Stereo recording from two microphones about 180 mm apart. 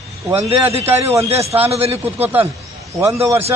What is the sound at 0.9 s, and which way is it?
Speech, 10° right (ahead or behind).